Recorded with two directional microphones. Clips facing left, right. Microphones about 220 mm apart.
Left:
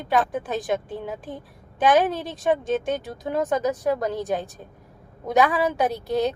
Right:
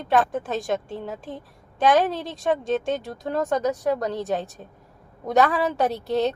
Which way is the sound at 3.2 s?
15° left (ahead or behind).